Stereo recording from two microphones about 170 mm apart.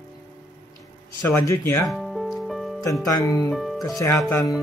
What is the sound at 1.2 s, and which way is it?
Speech, 15° left (ahead or behind).